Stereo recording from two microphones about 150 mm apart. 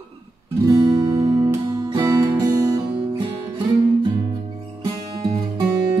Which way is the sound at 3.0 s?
30° right (ahead or behind).